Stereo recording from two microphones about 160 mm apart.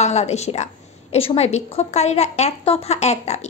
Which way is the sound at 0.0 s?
45° left (ahead or behind).